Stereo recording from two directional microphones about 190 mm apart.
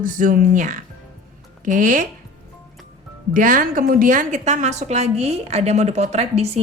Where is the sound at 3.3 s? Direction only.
45° right (ahead or behind).